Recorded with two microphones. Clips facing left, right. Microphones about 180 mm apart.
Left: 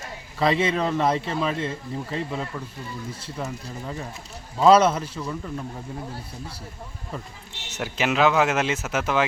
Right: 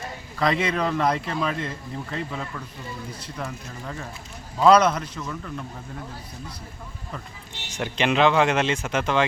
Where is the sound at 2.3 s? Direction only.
25° left (ahead or behind).